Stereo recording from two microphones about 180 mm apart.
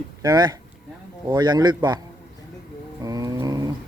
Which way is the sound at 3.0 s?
20° right (ahead or behind).